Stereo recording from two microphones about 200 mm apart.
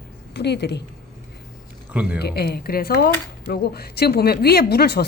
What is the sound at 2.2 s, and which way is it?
A woman's voice, 50° left (ahead or behind).